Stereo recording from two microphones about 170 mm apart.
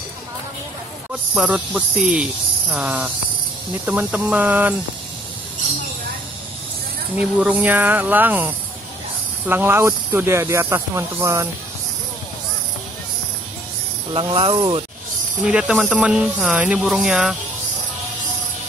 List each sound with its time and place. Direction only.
1.3 s speech: 5° right (ahead or behind)
7.2 s speech: 10° right (ahead or behind)
14.1 s speech: 30° right (ahead or behind)
15.4 s speech: 5° right (ahead or behind)